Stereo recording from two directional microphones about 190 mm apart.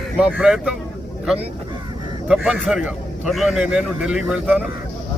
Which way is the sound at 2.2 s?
Centre (ahead or behind).